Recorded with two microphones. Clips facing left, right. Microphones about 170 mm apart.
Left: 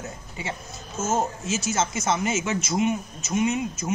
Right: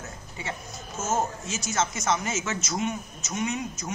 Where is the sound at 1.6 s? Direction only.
Centre (ahead or behind).